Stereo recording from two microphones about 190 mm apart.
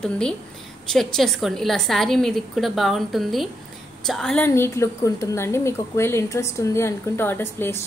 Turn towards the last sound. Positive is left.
turn(degrees=10)  # may be behind; listen again after turning